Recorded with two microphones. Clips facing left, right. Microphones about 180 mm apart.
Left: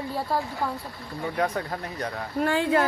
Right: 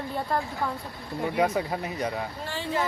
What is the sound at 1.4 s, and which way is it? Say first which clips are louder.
Speech: right 2 dB; 10° right (ahead or behind).